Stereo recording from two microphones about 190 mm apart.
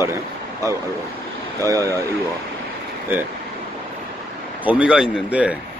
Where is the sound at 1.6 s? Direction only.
15° right (ahead or behind).